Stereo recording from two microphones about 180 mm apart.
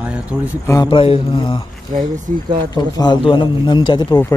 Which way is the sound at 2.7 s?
20° left (ahead or behind).